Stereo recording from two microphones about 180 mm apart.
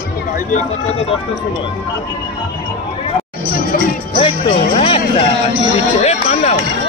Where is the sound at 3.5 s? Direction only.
55° left (ahead or behind).